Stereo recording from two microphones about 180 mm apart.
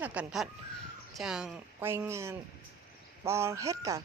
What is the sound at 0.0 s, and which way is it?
A woman's voice, 5° right (ahead or behind).